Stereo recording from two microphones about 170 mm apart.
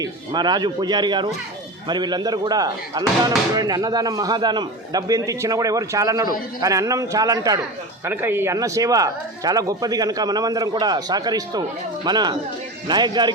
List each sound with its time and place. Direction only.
0.0 s speech: 25° right (ahead or behind)